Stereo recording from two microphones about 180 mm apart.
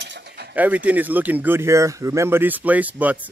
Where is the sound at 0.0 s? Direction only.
70° right (ahead or behind).